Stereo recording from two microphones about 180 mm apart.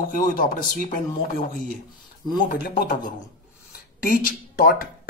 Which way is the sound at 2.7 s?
45° left (ahead or behind).